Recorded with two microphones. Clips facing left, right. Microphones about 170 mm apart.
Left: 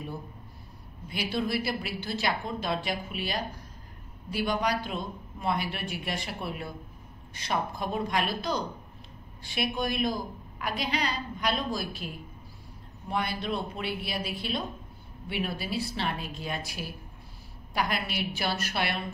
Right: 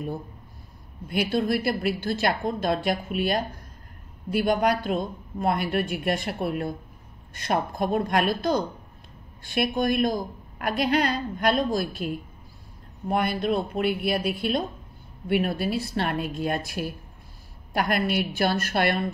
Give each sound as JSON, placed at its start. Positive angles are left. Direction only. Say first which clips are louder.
{"t": 1.0, "sound": "a woman's voice", "louder": "right 6 dB", "side_deg": -50}
{"t": 13.1, "sound": "a woman's voice", "louder": "right 7 dB", "side_deg": -50}